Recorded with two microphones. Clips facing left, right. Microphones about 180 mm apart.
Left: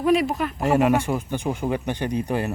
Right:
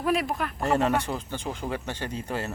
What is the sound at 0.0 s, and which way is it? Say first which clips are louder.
Speech: left 6 dB; centre (ahead or behind).